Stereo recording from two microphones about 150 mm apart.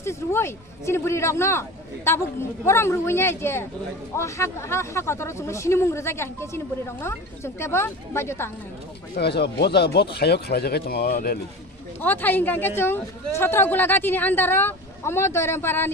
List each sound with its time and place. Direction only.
0.0 s speech: 15° left (ahead or behind)
9.1 s speech: 90° left
12.0 s speech: 10° left (ahead or behind)